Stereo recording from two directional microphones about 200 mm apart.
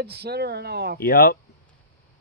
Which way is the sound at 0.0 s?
55° right (ahead or behind).